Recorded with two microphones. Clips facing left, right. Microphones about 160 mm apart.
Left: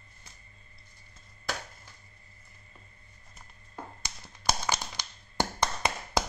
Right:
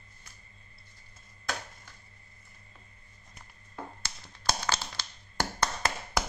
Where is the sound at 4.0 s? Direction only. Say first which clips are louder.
Even; 15° left (ahead or behind).